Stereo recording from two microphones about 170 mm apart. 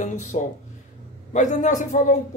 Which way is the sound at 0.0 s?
45° left (ahead or behind).